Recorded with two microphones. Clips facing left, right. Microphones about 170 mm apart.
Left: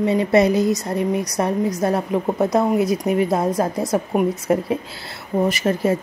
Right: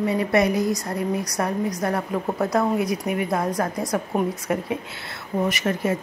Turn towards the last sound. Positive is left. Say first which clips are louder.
# left 4 dB
turn(degrees=30)  # may be behind; listen again after turning